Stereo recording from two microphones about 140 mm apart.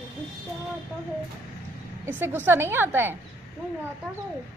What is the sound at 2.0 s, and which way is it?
A woman's voice, 15° right (ahead or behind).